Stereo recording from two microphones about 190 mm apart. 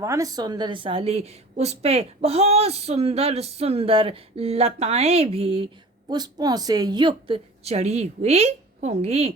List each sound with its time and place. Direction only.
0.0 s a woman's voice: 15° right (ahead or behind); by 9.3 s 35° right (ahead or behind)